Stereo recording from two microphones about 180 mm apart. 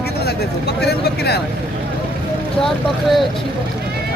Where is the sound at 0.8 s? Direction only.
65° left (ahead or behind).